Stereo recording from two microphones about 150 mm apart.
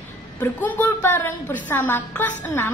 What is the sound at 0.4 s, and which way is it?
A woman's voice, 10° left (ahead or behind).